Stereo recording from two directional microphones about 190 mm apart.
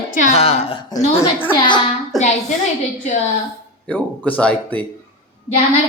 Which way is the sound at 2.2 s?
35° left (ahead or behind).